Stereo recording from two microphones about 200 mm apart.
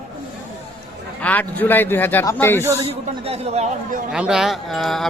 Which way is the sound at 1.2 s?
10° left (ahead or behind).